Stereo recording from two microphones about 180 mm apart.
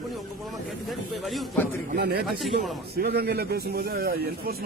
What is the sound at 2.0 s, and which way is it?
A man's voice, 65° right (ahead or behind).